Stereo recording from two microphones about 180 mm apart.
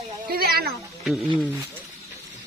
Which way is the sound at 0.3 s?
55° right (ahead or behind).